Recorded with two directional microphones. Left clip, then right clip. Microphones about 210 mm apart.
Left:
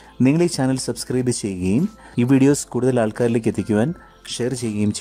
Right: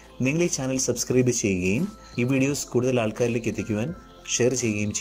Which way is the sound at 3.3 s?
75° left (ahead or behind).